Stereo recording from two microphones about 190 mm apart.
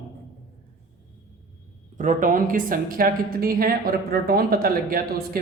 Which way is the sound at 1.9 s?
40° right (ahead or behind).